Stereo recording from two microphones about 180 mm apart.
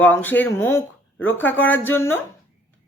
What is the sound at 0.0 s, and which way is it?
Speech, 10° left (ahead or behind).